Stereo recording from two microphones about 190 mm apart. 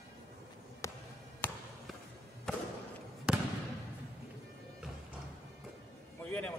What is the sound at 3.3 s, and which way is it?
Basketball bounce, 5° right (ahead or behind).